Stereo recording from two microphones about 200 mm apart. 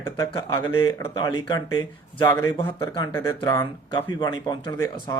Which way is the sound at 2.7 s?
25° left (ahead or behind).